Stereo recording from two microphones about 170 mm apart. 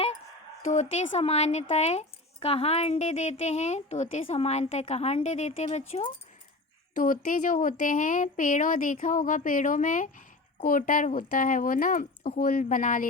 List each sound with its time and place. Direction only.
0.6 s speech: 45° left (ahead or behind)
6.9 s speech: 50° left (ahead or behind)